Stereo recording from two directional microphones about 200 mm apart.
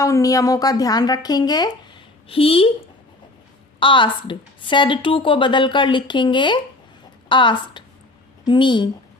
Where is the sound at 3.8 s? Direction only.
25° left (ahead or behind).